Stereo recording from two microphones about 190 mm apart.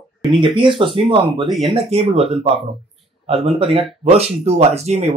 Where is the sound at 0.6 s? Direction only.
25° right (ahead or behind).